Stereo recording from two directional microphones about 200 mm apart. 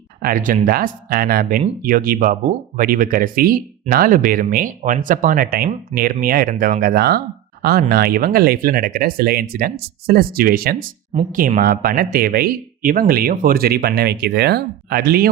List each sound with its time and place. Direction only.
0.2 s speech: 45° right (ahead or behind)